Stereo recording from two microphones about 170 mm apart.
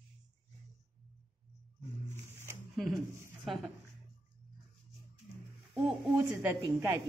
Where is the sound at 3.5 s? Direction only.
Centre (ahead or behind).